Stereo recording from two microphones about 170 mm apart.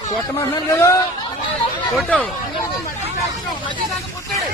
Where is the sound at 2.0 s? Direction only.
10° left (ahead or behind).